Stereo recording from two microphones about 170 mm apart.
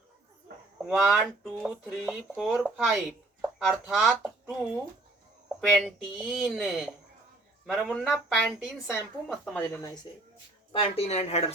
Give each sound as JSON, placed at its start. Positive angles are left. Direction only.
{"t": 0.9, "sound": "speech", "side_deg": -5}
{"t": 5.5, "sound": "speech", "side_deg": -5}
{"t": 9.6, "sound": "speech", "side_deg": 20}
{"t": 10.7, "sound": "speech", "side_deg": 35}